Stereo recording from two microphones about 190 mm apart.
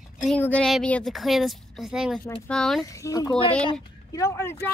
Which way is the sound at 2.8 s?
15° left (ahead or behind).